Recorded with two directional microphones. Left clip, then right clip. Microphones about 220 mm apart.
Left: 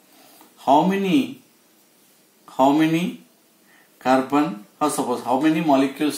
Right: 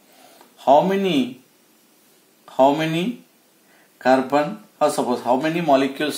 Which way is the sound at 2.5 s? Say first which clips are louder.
Right 1 dB; 40° right (ahead or behind).